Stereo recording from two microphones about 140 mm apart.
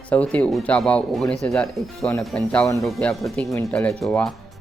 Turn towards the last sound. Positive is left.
turn(degrees=0)  # may be behind; listen again after turning